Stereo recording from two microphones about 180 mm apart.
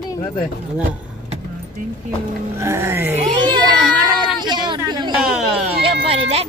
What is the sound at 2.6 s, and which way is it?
Speech, 15° right (ahead or behind).